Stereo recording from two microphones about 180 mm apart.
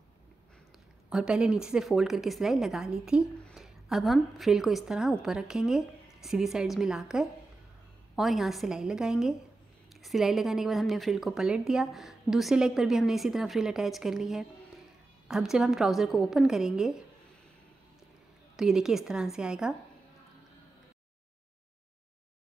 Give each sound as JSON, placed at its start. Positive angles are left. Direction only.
{"t": 1.1, "sound": "a woman's voice", "side_deg": -5}
{"t": 18.6, "sound": "a woman's voice", "side_deg": 0}